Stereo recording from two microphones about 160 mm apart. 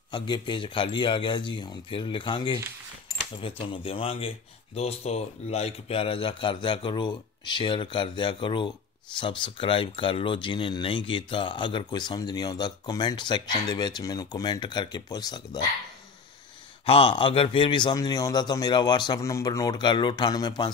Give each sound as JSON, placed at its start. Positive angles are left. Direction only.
{"t": 0.1, "sound": "a man's voice", "side_deg": 30}
{"t": 16.8, "sound": "a man's voice", "side_deg": 35}